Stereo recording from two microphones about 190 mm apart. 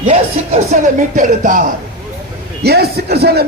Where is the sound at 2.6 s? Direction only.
55° right (ahead or behind).